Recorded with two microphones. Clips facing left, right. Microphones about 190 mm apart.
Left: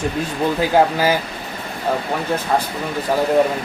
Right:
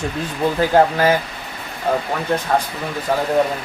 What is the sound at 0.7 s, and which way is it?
Speech, 10° left (ahead or behind).